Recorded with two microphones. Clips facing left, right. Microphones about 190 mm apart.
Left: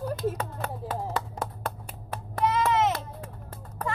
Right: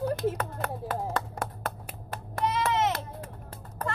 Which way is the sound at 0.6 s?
60° right (ahead or behind).